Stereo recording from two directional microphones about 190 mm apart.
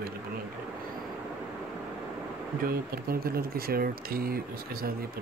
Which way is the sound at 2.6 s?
50° right (ahead or behind).